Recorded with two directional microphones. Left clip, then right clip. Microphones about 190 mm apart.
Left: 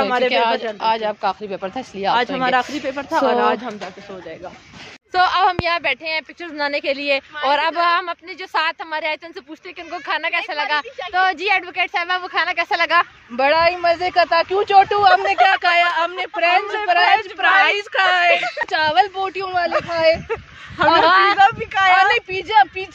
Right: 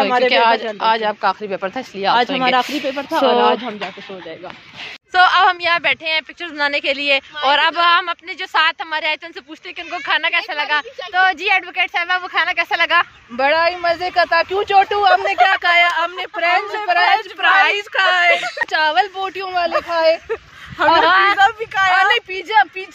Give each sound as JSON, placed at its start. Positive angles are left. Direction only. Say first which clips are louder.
{"t": 0.3, "sound": "a woman's voice", "louder": "right 4 dB", "side_deg": 0}
{"t": 2.3, "sound": "speech", "louder": "right 2 dB", "side_deg": -40}
{"t": 5.1, "sound": "a woman's voice", "louder": "right 4 dB", "side_deg": 0}
{"t": 13.4, "sound": "a woman's voice", "louder": "even", "side_deg": 35}
{"t": 18.4, "sound": "a woman's voice", "louder": "right 1 dB", "side_deg": 20}
{"t": 18.8, "sound": "a woman's voice", "louder": "even", "side_deg": 35}
{"t": 20.7, "sound": "a woman's voice", "louder": "right 1 dB", "side_deg": 30}
{"t": 21.0, "sound": "a woman's voice", "louder": "even", "side_deg": 10}
{"t": 21.4, "sound": "a woman's voice", "louder": "even", "side_deg": 30}